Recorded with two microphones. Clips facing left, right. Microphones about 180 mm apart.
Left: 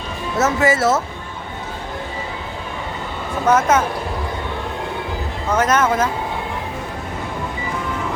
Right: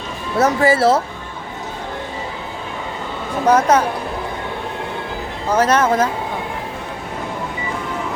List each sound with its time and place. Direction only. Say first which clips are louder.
0.3 s speech: right 2 dB; 30° right (ahead or behind)
3.4 s speech: right 2 dB; 35° right (ahead or behind)
5.5 s speech: right 2 dB; 30° right (ahead or behind)